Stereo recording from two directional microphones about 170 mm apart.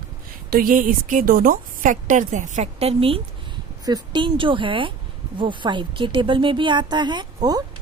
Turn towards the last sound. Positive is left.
turn(degrees=-25)  # may be behind; listen again after turning